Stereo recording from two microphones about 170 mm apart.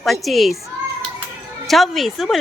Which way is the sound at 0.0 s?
Centre (ahead or behind).